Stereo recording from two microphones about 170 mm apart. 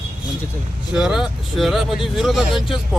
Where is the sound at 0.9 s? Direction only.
5° right (ahead or behind).